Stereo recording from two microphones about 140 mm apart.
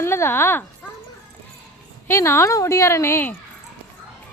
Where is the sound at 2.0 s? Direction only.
20° left (ahead or behind).